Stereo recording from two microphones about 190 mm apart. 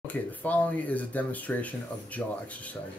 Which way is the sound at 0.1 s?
10° left (ahead or behind).